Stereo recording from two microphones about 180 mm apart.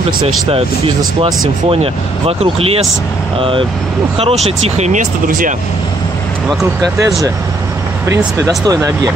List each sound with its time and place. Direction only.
0.5 s speech: 30° right (ahead or behind)
6.6 s speech: centre (ahead or behind)
8.1 s speech: 20° right (ahead or behind)